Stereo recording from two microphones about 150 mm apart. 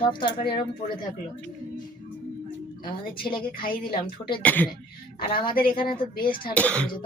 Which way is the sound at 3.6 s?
70° left (ahead or behind).